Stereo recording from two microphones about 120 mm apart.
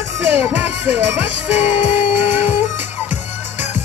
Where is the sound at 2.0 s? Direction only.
15° right (ahead or behind).